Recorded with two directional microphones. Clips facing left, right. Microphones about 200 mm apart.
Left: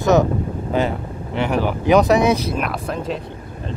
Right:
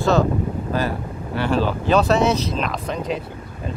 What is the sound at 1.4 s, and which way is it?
Speech, 15° left (ahead or behind).